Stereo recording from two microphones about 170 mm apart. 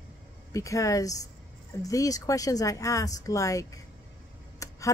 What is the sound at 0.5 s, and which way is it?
Speech, 20° left (ahead or behind).